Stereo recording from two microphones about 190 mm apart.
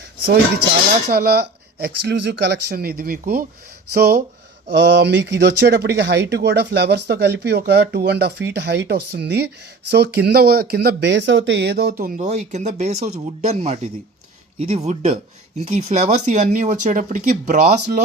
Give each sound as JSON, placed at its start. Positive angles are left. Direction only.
{"t": 1.1, "sound": "speech", "side_deg": -55}